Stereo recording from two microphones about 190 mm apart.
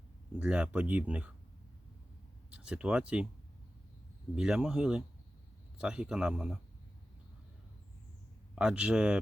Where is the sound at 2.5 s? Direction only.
5° right (ahead or behind).